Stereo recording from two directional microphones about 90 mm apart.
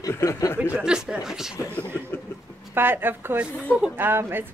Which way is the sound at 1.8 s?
20° left (ahead or behind).